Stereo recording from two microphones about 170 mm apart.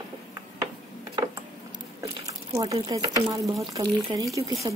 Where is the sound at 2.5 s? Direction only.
20° right (ahead or behind).